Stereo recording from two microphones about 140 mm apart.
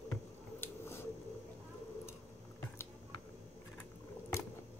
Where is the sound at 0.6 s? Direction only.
15° left (ahead or behind).